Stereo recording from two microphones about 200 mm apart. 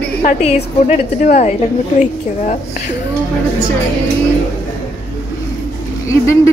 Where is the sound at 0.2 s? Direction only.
35° left (ahead or behind).